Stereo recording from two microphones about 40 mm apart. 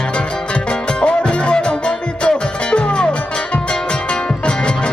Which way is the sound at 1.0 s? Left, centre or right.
Left.